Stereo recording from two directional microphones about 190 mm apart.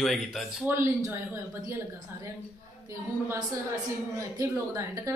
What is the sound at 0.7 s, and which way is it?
Speech, 15° right (ahead or behind).